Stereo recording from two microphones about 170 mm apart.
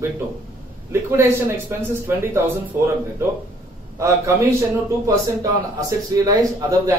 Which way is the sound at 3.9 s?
15° right (ahead or behind).